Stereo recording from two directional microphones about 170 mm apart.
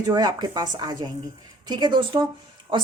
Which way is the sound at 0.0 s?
25° right (ahead or behind).